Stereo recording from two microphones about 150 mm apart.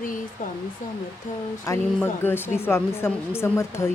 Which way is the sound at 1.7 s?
20° left (ahead or behind).